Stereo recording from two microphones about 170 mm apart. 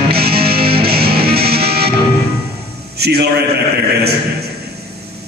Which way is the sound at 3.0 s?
70° right (ahead or behind).